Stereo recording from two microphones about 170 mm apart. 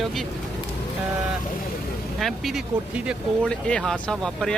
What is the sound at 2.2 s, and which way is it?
Speech, centre (ahead or behind).